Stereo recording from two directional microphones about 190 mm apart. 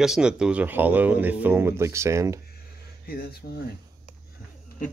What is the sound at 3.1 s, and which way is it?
Speech, 55° left (ahead or behind).